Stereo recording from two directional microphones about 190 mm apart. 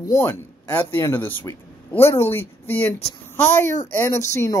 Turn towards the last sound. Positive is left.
turn(degrees=15)  # may be behind; listen again after turning